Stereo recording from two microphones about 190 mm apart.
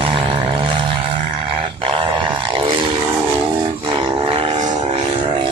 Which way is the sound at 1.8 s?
25° right (ahead or behind).